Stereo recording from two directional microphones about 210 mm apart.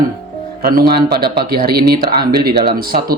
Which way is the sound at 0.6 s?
45° right (ahead or behind).